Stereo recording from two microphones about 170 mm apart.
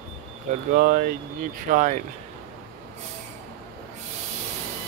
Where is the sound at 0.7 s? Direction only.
60° right (ahead or behind).